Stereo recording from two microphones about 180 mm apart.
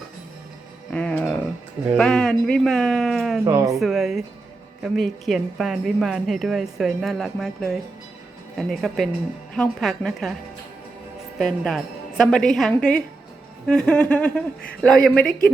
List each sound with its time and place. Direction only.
0.9 s music: 5° left (ahead or behind)
2.0 s speech: 5° left (ahead or behind)
3.4 s speech: 20° right (ahead or behind)
3.8 s speech: centre (ahead or behind)
11.3 s speech: centre (ahead or behind)